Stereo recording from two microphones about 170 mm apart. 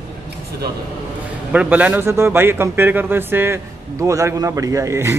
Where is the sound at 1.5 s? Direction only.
10° right (ahead or behind).